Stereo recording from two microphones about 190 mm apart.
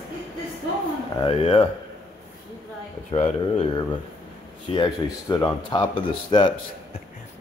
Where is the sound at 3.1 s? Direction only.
25° left (ahead or behind).